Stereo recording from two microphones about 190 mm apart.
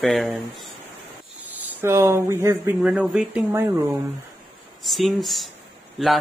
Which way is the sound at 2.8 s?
5° right (ahead or behind).